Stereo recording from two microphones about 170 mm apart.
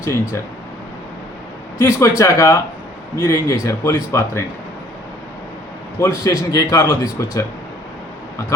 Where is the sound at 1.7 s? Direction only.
15° left (ahead or behind).